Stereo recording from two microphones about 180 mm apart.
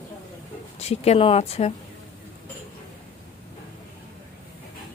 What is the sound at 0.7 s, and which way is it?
Speech, 35° left (ahead or behind).